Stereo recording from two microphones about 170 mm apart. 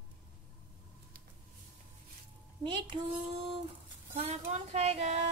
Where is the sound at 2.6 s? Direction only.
30° right (ahead or behind).